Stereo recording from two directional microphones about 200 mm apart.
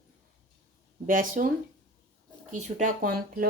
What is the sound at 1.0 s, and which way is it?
Speech, 45° right (ahead or behind).